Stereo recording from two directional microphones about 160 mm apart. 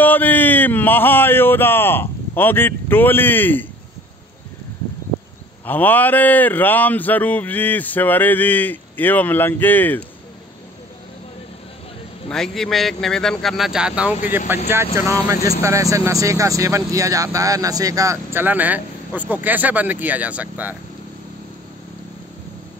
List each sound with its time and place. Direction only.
0.0 s speech: 10° left (ahead or behind)
5.7 s speech: 10° left (ahead or behind)
12.3 s a man's voice: centre (ahead or behind)